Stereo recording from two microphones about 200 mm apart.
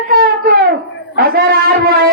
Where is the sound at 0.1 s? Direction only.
50° right (ahead or behind).